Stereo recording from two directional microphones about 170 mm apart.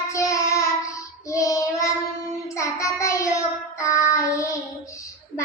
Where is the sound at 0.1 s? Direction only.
20° left (ahead or behind).